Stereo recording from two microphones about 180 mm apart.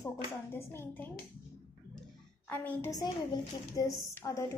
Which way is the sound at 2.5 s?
10° left (ahead or behind).